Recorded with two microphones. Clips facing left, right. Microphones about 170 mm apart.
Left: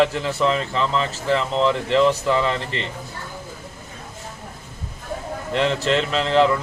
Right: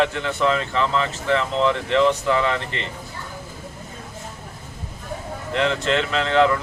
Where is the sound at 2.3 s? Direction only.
30° left (ahead or behind).